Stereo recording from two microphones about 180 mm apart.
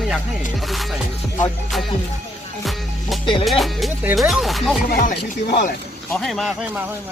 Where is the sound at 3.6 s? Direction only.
Centre (ahead or behind).